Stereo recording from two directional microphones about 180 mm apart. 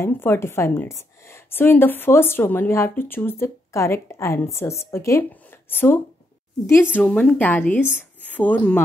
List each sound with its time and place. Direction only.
0.0 s a woman's voice: 15° left (ahead or behind)